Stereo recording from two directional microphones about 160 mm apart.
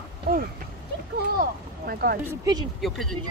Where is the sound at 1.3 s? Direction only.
70° right (ahead or behind).